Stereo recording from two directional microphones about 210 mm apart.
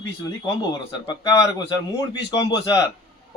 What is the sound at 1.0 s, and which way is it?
A man's voice, 15° left (ahead or behind).